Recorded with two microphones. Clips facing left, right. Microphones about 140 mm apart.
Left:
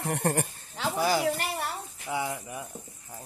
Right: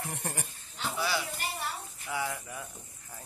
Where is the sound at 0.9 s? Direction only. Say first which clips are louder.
Left 6 dB; 45° left (ahead or behind).